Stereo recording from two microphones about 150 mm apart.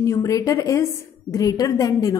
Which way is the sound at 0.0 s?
20° left (ahead or behind).